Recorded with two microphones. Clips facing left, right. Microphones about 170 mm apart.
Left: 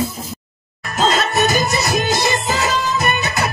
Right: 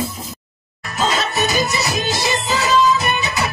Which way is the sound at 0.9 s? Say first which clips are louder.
Left 3 dB; 50° left (ahead or behind).